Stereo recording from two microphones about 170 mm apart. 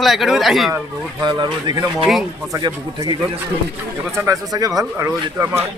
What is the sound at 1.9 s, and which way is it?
Speech, centre (ahead or behind).